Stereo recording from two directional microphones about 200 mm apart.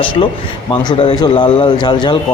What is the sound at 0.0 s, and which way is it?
Speech, 25° left (ahead or behind).